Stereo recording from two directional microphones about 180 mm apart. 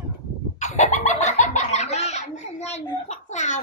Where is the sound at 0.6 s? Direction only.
40° left (ahead or behind).